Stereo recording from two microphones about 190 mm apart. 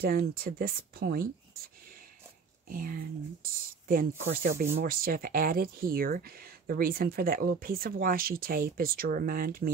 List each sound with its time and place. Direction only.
0.0 s speech: 50° right (ahead or behind)
2.7 s speech: 45° right (ahead or behind)